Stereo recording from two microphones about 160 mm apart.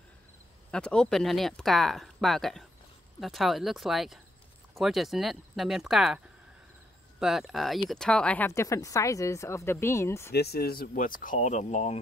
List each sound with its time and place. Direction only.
0.7 s speech: 5° left (ahead or behind)
10.3 s speech: 90° left; by 12.0 s 45° left (ahead or behind)